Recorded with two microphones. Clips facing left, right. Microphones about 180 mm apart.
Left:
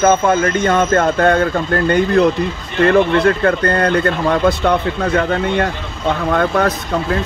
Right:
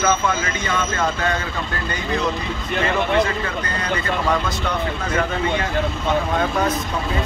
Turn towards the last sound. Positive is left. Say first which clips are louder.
# left 5 dB
turn(degrees=65)  # may be behind; listen again after turning